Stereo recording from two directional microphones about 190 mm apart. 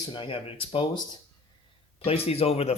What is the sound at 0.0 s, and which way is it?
Speech, 25° left (ahead or behind).